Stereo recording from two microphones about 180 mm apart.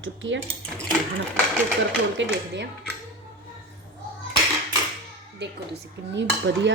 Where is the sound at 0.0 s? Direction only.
90° right.